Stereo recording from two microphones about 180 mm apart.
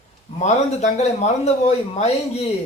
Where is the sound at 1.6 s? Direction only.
35° left (ahead or behind).